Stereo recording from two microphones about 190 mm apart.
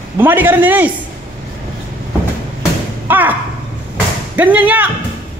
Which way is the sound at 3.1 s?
10° right (ahead or behind).